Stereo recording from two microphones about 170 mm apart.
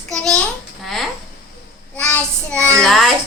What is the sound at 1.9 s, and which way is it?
Child singing, 10° left (ahead or behind).